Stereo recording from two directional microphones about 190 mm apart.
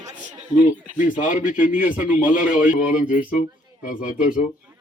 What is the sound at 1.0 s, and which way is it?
Speech, 40° left (ahead or behind).